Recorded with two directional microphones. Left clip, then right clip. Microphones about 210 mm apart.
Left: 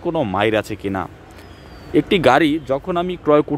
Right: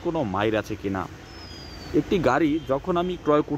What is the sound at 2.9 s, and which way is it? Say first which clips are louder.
Speech: left 7 dB; 15° left (ahead or behind).